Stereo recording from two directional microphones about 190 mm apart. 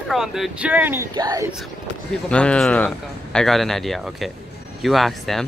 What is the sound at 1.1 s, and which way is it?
Speech, 20° right (ahead or behind).